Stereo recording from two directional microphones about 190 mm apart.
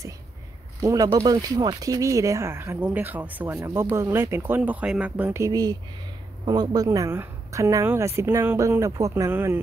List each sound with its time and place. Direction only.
0.8 s a woman's voice: 20° right (ahead or behind)